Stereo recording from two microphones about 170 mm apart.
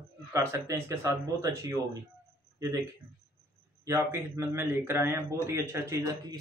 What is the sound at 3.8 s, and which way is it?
A man's voice, 15° right (ahead or behind).